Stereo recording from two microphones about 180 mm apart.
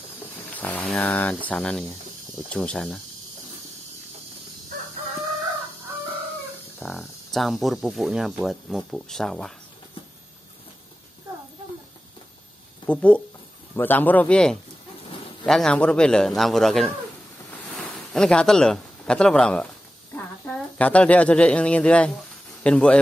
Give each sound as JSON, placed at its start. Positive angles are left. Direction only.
{"t": 0.6, "sound": "speech", "side_deg": 10}
{"t": 6.8, "sound": "a sound", "side_deg": 0}
{"t": 7.3, "sound": "speech", "side_deg": 0}
{"t": 12.8, "sound": "a man's voice", "side_deg": 5}